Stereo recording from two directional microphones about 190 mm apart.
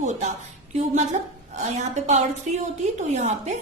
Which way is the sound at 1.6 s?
35° right (ahead or behind).